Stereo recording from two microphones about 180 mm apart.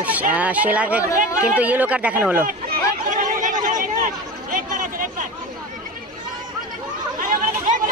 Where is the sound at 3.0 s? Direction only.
45° right (ahead or behind).